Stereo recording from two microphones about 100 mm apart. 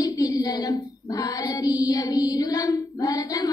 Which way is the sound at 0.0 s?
40° left (ahead or behind).